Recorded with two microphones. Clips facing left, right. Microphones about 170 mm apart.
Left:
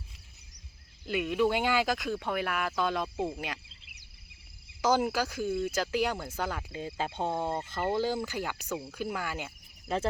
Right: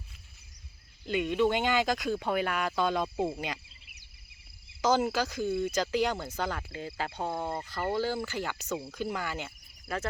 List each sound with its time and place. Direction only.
1.0 s speech: 5° left (ahead or behind)
4.8 s speech: 10° left (ahead or behind)